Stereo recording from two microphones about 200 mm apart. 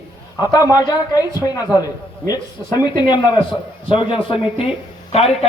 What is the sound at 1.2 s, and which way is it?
Speech, 10° right (ahead or behind).